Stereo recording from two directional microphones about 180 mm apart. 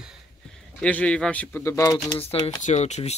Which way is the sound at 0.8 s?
5° left (ahead or behind).